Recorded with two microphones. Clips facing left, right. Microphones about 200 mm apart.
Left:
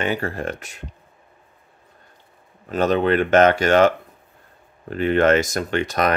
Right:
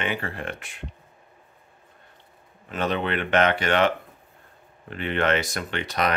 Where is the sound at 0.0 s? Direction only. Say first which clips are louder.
Left 6 dB; 40° left (ahead or behind).